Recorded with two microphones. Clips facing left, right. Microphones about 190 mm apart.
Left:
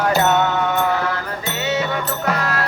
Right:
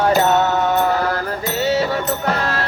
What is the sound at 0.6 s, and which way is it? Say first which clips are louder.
Mantra: right 2 dB; 40° right (ahead or behind).